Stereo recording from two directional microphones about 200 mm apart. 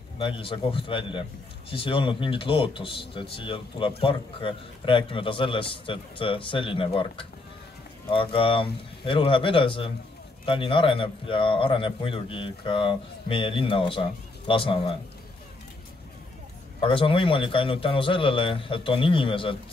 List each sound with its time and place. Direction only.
0.2 s speech: 25° left (ahead or behind)
16.8 s speech: 25° left (ahead or behind)